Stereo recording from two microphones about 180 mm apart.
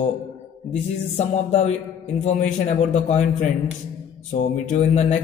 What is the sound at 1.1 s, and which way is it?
Speech, 40° left (ahead or behind).